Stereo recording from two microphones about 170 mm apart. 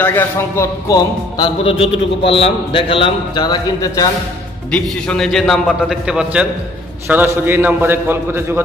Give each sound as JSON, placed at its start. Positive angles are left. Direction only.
{"t": 0.0, "sound": "a man's voice", "side_deg": 15}
{"t": 4.6, "sound": "a man's voice", "side_deg": 5}